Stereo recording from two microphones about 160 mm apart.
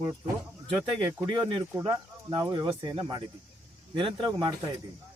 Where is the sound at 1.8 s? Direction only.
30° right (ahead or behind).